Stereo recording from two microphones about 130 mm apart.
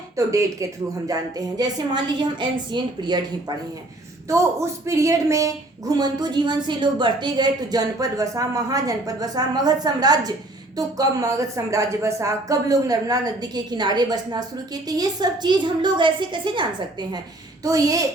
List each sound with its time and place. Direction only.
0.2 s a woman's voice: 25° right (ahead or behind)
4.3 s a woman's voice: 20° right (ahead or behind)
17.6 s speech: 25° right (ahead or behind)